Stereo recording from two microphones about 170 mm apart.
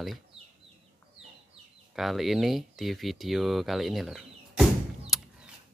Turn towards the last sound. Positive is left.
turn(degrees=0)  # may be behind; listen again after turning